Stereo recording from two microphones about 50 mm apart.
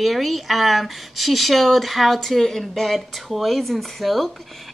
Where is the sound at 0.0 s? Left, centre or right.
Centre.